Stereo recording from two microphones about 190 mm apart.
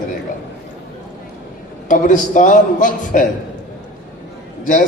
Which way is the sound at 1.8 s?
40° left (ahead or behind).